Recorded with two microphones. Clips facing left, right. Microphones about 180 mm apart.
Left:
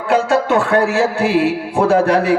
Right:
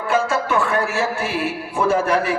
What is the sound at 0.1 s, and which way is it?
A man's voice, 70° left (ahead or behind).